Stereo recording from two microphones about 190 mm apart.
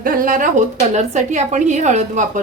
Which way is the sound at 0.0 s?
45° right (ahead or behind).